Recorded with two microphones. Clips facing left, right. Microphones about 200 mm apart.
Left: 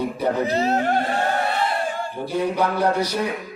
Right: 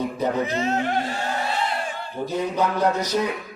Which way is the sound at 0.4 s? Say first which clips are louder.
Left 3 dB; 35° left (ahead or behind).